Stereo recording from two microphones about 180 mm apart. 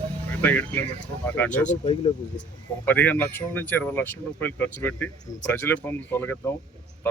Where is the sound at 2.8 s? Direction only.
10° left (ahead or behind).